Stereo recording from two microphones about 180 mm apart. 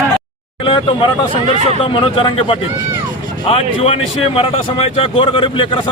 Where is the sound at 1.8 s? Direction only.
30° left (ahead or behind).